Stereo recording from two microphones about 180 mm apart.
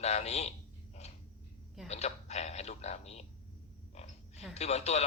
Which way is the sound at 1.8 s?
35° left (ahead or behind).